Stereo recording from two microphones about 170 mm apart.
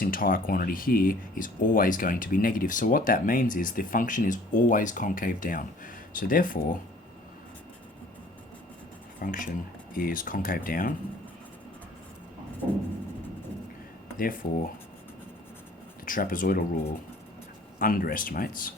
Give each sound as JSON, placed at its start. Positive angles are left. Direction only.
{"t": 0.0, "sound": "speech", "side_deg": 55}
{"t": 9.2, "sound": "speech", "side_deg": 55}
{"t": 14.2, "sound": "speech", "side_deg": 55}
{"t": 16.0, "sound": "speech", "side_deg": 55}
{"t": 17.7, "sound": "speech", "side_deg": 55}